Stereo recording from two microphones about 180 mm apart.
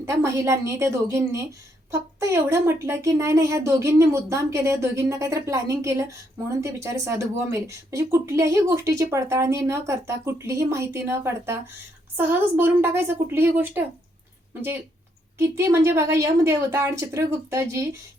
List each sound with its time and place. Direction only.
0.0 s speech: 15° right (ahead or behind)
15.4 s speech: 15° right (ahead or behind)